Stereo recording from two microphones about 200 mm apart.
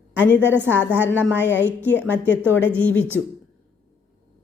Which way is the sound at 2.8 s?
10° left (ahead or behind).